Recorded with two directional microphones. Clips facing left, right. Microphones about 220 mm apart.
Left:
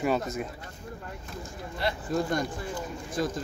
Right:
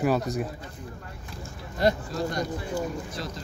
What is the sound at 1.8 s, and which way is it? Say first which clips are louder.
Speech: right 8 dB; 45° right (ahead or behind).